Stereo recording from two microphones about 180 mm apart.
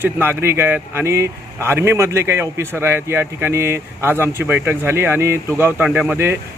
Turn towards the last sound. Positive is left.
turn(degrees=-10)  # may be behind; listen again after turning